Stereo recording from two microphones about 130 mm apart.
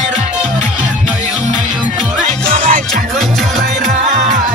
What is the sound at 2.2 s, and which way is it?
Music, 75° right (ahead or behind).